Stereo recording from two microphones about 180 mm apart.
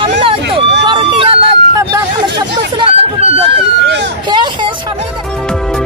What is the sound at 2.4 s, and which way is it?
Chatter, 30° right (ahead or behind).